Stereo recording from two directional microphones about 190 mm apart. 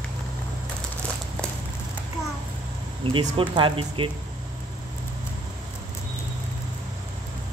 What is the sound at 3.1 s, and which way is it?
Speech, 25° right (ahead or behind).